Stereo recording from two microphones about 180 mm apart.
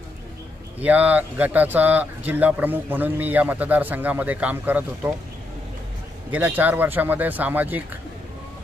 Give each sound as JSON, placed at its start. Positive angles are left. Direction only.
{"t": 0.8, "sound": "speech", "side_deg": -10}
{"t": 6.3, "sound": "speech", "side_deg": -10}